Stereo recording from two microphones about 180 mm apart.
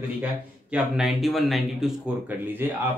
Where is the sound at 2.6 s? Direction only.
15° right (ahead or behind).